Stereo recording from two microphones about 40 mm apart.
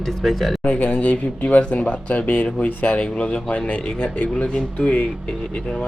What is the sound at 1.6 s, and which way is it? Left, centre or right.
Speech, left.